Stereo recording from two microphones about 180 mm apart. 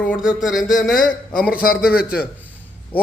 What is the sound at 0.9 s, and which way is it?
Speech, 50° left (ahead or behind).